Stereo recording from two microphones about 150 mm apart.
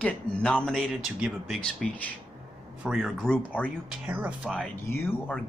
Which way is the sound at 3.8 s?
10° right (ahead or behind).